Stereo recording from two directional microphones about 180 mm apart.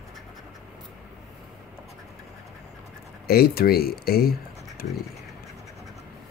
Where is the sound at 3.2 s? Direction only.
60° left (ahead or behind).